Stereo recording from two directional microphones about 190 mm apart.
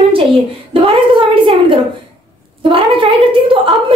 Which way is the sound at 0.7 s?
25° right (ahead or behind).